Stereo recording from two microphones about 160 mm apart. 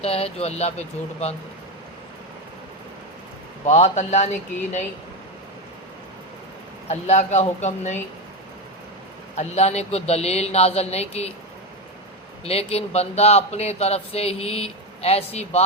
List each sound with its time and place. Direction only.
0.0 s speech: 40° left (ahead or behind)
3.7 s speech: 45° left (ahead or behind)
6.8 s speech: 45° left (ahead or behind)
9.3 s speech: 45° left (ahead or behind)
12.5 s speech: 40° left (ahead or behind)